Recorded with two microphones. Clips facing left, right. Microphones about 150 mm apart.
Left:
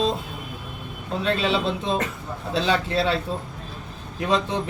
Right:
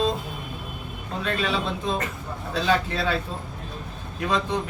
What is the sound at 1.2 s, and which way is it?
Speech, 25° left (ahead or behind).